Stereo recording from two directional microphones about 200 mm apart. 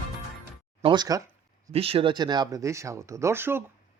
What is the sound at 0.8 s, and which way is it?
Speech, 20° right (ahead or behind).